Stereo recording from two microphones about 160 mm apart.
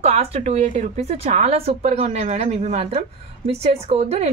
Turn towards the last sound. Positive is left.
turn(degrees=-40)  # may be behind; listen again after turning